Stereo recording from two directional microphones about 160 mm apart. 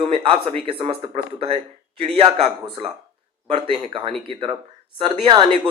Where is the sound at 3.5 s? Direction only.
35° right (ahead or behind).